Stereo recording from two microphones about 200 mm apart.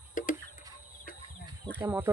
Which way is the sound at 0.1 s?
40° left (ahead or behind).